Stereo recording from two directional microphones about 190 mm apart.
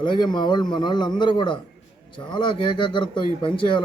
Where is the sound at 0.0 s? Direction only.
25° left (ahead or behind).